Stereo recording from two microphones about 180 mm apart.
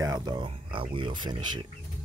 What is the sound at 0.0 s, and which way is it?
Speech, 20° right (ahead or behind).